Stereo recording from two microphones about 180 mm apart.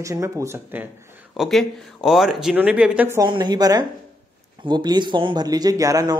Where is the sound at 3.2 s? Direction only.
25° right (ahead or behind).